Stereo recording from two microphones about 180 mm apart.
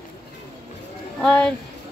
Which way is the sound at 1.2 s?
5° left (ahead or behind).